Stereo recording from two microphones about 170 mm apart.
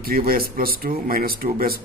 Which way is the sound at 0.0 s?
60° right (ahead or behind).